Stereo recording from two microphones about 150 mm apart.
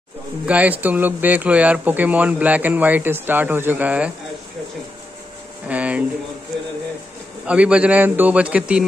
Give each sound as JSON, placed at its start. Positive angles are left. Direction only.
{"t": 0.5, "sound": "speech", "side_deg": -10}
{"t": 5.7, "sound": "a sound", "side_deg": -10}
{"t": 7.4, "sound": "speech", "side_deg": -10}